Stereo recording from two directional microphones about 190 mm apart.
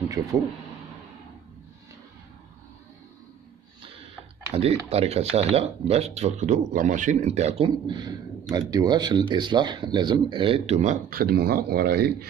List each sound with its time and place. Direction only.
0.2 s speech: 20° right (ahead or behind)
4.8 s speech: 30° right (ahead or behind); by 12.3 s 55° right (ahead or behind)